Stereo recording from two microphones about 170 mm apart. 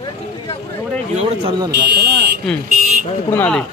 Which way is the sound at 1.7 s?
90° right.